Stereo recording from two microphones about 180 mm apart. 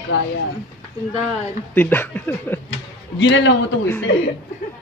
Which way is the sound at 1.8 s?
10° left (ahead or behind).